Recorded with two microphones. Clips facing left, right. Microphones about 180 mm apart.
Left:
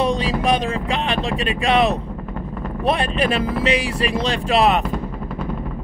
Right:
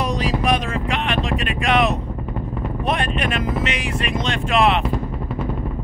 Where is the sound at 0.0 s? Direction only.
30° left (ahead or behind).